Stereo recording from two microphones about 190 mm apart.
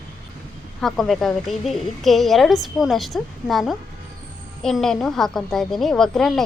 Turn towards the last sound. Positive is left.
turn(degrees=0)  # may be behind; listen again after turning